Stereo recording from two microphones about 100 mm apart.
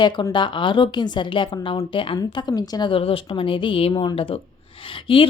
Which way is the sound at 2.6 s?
45° left (ahead or behind).